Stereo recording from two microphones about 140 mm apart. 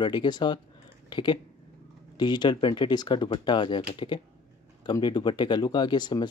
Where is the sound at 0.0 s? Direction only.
35° left (ahead or behind).